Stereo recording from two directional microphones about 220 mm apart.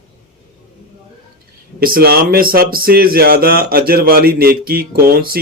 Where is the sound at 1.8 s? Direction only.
45° right (ahead or behind).